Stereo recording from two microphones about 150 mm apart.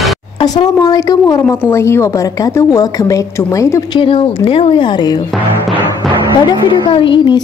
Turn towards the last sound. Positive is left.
turn(degrees=35)  # may be behind; listen again after turning